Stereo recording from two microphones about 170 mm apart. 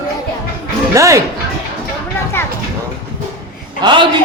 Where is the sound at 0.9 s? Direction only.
20° right (ahead or behind).